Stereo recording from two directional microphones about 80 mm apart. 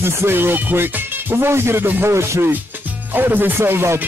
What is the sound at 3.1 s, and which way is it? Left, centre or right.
Music, right.